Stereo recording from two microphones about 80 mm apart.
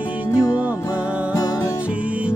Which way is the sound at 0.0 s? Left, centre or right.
Centre.